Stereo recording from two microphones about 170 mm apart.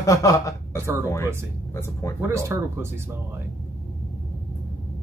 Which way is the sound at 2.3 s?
15° right (ahead or behind).